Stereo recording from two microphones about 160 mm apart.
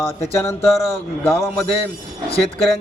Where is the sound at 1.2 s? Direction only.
5° left (ahead or behind).